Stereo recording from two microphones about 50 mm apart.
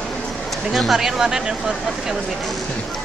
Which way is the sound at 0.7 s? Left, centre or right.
Centre.